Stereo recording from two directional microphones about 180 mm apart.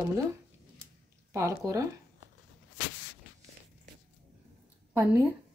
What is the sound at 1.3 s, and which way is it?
Speech, 20° right (ahead or behind).